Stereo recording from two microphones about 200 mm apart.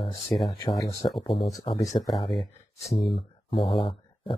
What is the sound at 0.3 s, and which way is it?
Speech, centre (ahead or behind).